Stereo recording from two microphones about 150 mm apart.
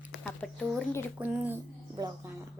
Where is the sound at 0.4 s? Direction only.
5° left (ahead or behind).